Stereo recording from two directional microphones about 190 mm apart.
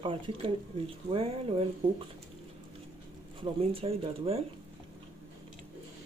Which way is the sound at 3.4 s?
30° right (ahead or behind).